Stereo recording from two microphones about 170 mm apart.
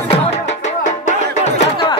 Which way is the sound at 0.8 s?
45° left (ahead or behind).